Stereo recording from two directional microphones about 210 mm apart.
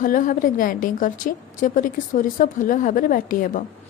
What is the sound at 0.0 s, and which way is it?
A woman's voice, 40° left (ahead or behind).